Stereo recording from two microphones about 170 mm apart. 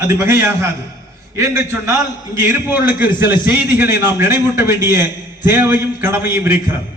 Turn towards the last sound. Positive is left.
turn(degrees=-15)  # may be behind; listen again after turning